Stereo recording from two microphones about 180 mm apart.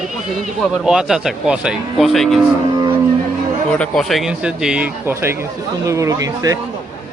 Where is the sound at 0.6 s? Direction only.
5° right (ahead or behind).